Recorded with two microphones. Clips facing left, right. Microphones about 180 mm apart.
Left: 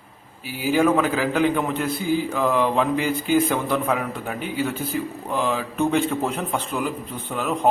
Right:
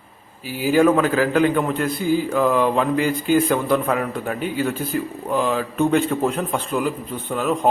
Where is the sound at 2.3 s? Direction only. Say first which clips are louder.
Right 4 dB; 10° right (ahead or behind).